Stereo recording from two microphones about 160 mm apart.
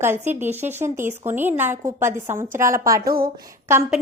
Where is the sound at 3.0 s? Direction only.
70° right (ahead or behind).